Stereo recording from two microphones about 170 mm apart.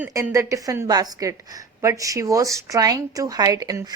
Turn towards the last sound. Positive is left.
turn(degrees=-20)  # may be behind; listen again after turning